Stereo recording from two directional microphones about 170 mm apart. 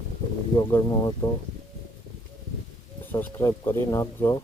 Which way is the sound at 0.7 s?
20° left (ahead or behind).